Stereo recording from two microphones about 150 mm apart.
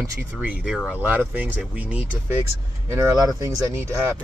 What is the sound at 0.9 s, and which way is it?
Speech, 10° right (ahead or behind).